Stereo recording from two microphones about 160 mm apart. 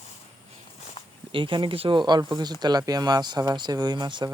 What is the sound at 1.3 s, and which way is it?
Speech, 30° right (ahead or behind).